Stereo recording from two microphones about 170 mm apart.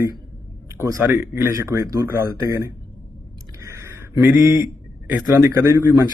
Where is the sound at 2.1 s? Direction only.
60° left (ahead or behind).